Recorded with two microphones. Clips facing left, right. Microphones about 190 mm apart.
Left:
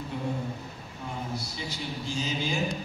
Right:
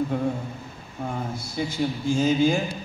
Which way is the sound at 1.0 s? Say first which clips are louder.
Right 5 dB; 50° right (ahead or behind).